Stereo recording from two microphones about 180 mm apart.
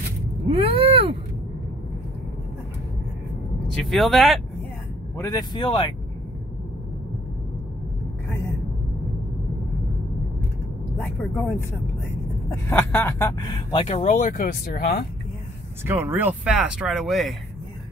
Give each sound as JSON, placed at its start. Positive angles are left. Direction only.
{"t": 0.5, "sound": "a sound", "side_deg": -30}
{"t": 3.7, "sound": "speech", "side_deg": 0}
{"t": 5.1, "sound": "speech", "side_deg": 15}
{"t": 11.0, "sound": "speech", "side_deg": 10}
{"t": 12.6, "sound": "speech", "side_deg": 10}
{"t": 13.4, "sound": "speech", "side_deg": 25}
{"t": 15.8, "sound": "speech", "side_deg": -15}